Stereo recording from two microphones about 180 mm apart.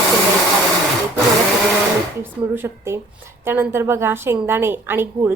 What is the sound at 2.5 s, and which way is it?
A woman's voice, 15° right (ahead or behind).